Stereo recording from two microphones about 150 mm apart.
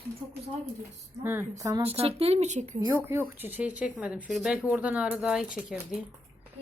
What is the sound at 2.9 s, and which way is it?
Speech, 15° right (ahead or behind).